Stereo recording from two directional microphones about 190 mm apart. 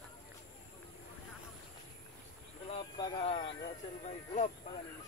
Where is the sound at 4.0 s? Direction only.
40° left (ahead or behind).